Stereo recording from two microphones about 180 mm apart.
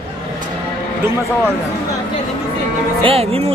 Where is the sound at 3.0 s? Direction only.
35° right (ahead or behind).